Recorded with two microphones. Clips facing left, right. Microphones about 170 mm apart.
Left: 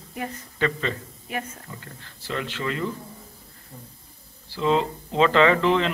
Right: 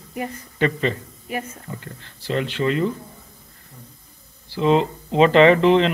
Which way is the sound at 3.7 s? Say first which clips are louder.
Left 2 dB; 30° left (ahead or behind).